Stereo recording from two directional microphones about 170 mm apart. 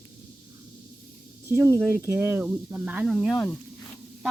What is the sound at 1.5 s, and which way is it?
Speech, 15° right (ahead or behind).